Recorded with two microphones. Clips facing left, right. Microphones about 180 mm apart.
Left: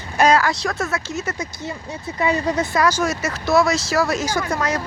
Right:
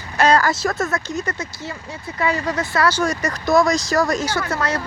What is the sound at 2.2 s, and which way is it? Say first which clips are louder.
Speech: left 2 dB; 20° left (ahead or behind).